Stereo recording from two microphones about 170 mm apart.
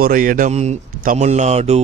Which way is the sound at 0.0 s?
55° right (ahead or behind).